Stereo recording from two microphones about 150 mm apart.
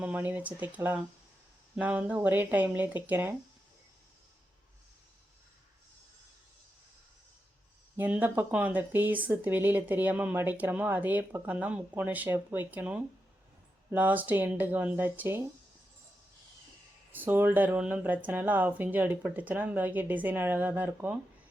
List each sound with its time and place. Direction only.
0.0 s speech: 10° right (ahead or behind)
7.9 s speech: 10° right (ahead or behind)
17.1 s speech: 15° right (ahead or behind)